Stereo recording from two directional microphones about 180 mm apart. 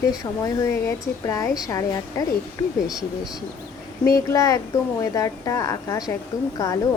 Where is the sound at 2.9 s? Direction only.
Centre (ahead or behind).